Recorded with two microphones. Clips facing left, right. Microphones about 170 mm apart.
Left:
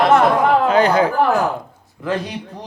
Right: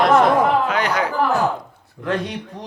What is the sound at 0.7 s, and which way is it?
Speech, 30° left (ahead or behind).